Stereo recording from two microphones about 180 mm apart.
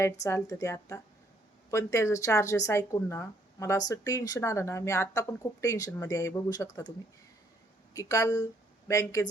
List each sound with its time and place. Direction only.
0.0 s speech: 15° left (ahead or behind)
7.9 s speech: 20° left (ahead or behind)